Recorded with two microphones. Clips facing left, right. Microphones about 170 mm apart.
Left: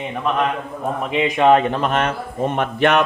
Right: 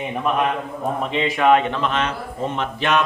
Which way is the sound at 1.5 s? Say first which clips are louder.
Left 2 dB; 45° left (ahead or behind).